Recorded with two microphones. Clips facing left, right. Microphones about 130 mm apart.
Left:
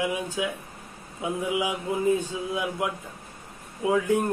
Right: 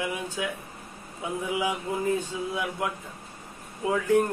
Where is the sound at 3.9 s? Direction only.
15° left (ahead or behind).